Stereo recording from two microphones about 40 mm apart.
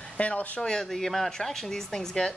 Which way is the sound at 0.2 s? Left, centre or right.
Left.